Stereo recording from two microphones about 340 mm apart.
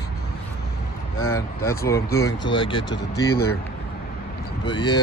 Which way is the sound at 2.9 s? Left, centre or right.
Left.